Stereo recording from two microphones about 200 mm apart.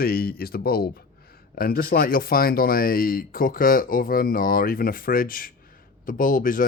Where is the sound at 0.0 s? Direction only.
50° left (ahead or behind).